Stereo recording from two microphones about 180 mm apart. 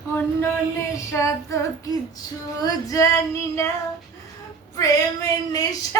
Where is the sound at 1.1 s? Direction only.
15° left (ahead or behind).